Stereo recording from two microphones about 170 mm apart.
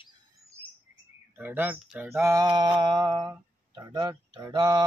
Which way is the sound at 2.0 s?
15° right (ahead or behind).